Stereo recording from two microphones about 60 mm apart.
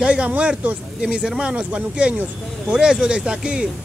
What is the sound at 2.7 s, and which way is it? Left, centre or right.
Speech, centre.